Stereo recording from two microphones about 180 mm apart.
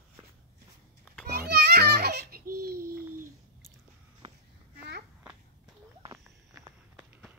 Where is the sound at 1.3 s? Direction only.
60° right (ahead or behind).